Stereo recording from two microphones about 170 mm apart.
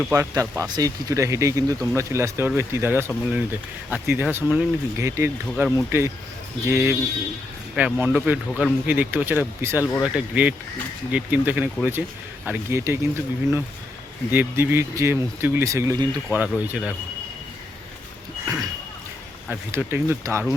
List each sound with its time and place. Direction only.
0.1 s speech: 15° right (ahead or behind)
16.6 s speech: 5° right (ahead or behind)
18.4 s a sound: 20° right (ahead or behind)
19.5 s speech: 15° right (ahead or behind)